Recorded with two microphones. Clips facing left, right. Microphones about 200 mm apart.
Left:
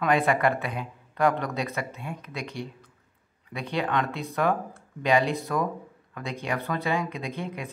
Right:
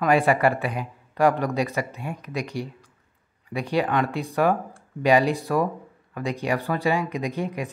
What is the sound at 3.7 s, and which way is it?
Speech, 10° right (ahead or behind).